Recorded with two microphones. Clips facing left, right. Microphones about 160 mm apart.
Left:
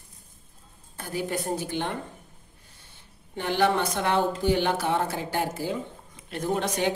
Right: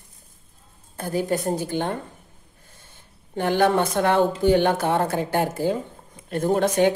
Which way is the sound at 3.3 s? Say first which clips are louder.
Right 4 dB; 50° right (ahead or behind).